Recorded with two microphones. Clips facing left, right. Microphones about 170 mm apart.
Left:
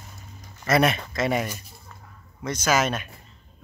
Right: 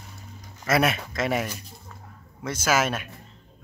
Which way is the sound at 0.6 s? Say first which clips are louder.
Left 2 dB; 5° right (ahead or behind).